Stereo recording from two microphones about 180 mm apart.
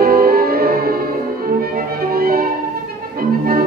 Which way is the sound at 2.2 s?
55° right (ahead or behind).